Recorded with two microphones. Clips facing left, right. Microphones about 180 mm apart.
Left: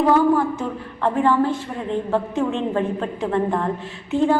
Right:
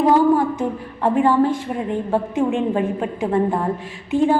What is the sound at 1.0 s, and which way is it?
A woman's voice, 10° right (ahead or behind).